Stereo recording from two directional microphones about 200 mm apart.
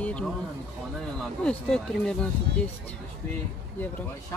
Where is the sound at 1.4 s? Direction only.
5° left (ahead or behind).